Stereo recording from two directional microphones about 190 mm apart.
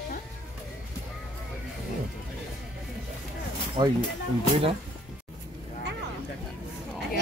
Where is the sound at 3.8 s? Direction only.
25° right (ahead or behind).